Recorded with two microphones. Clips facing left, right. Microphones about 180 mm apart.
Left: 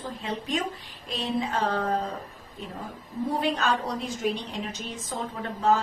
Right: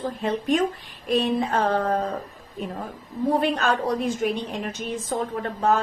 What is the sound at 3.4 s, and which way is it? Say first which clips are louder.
A woman's voice: right 3 dB; 55° right (ahead or behind).